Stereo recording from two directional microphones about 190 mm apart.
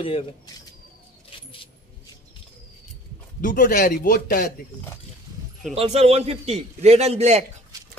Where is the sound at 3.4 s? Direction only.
45° left (ahead or behind).